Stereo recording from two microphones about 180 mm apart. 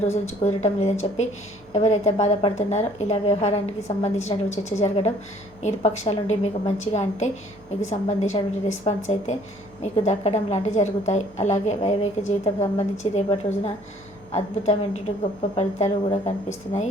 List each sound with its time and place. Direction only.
0.0 s a woman's voice: 35° left (ahead or behind)